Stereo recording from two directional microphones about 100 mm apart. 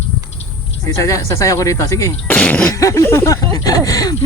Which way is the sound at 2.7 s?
35° left (ahead or behind).